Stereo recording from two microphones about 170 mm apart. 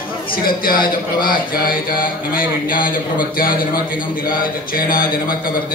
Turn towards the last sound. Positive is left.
turn(degrees=55)  # may be behind; listen again after turning